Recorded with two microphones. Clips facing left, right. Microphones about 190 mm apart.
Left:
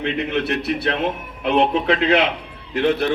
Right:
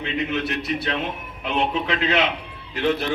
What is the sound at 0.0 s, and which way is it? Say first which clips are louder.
Speech: left 3 dB; 60° left (ahead or behind).